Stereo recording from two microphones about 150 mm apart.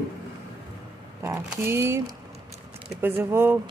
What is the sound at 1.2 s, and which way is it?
Speech, 15° right (ahead or behind).